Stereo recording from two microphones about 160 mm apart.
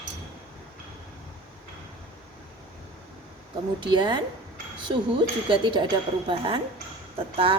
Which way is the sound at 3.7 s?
30° right (ahead or behind).